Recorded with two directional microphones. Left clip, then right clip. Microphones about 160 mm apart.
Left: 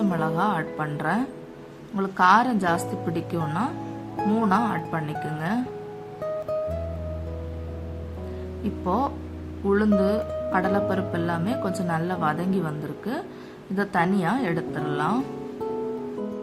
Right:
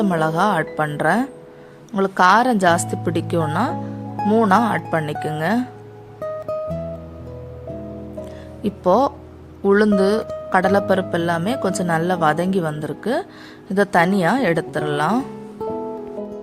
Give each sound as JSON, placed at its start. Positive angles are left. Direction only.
{"t": 0.0, "sound": "speech", "side_deg": -55}
{"t": 6.2, "sound": "music", "side_deg": 0}
{"t": 8.6, "sound": "speech", "side_deg": -55}